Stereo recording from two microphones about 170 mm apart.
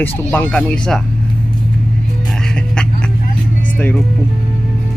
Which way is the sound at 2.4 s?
5° left (ahead or behind).